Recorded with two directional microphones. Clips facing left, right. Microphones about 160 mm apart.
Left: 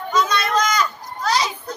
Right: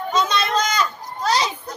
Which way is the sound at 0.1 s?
30° right (ahead or behind).